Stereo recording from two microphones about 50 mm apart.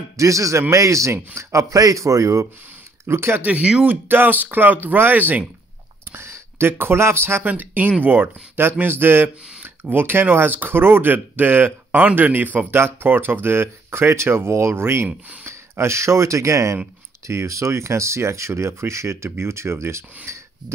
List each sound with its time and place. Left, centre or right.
0.2 s a man's voice: right
3.1 s speech: right
3.8 s speech: right
6.1 s speech: right
7.5 s speech: right
12.7 s speech: right
17.3 s speech: right